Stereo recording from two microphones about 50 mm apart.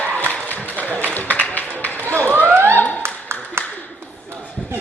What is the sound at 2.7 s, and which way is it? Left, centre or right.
Clapping, left.